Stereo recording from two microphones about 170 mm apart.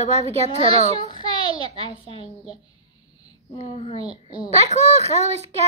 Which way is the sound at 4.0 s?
35° right (ahead or behind).